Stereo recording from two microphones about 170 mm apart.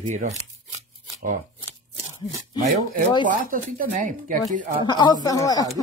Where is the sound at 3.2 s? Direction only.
55° right (ahead or behind).